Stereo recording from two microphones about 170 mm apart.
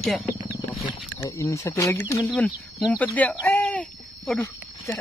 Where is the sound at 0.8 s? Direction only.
20° left (ahead or behind).